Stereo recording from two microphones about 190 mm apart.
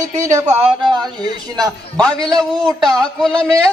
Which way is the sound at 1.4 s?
20° right (ahead or behind).